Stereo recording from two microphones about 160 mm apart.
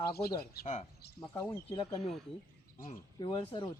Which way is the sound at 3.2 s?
35° left (ahead or behind).